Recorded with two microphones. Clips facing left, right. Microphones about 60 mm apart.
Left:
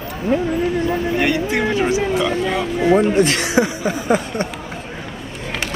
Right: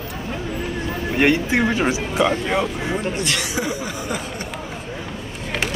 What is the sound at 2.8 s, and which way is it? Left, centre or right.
Speech, left.